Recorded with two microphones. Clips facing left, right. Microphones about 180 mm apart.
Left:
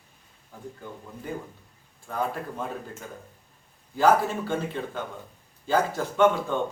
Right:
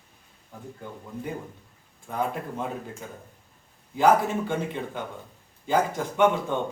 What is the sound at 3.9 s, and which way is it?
Speech, 15° right (ahead or behind).